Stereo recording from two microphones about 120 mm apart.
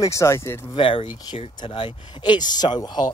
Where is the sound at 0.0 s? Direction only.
25° left (ahead or behind).